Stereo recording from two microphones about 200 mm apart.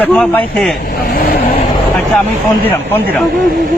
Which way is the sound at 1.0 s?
50° left (ahead or behind).